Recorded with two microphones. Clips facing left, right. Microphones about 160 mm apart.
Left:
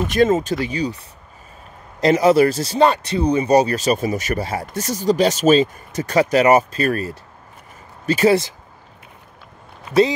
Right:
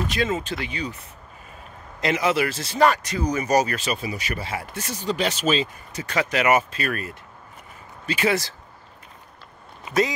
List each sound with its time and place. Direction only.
0.1 s speech: 45° left (ahead or behind)
2.0 s speech: 35° left (ahead or behind)